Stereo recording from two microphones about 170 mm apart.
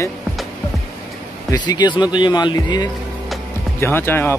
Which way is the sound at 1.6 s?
25° left (ahead or behind).